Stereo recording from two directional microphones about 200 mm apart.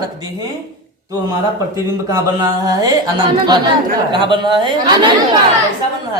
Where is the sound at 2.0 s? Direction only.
20° right (ahead or behind).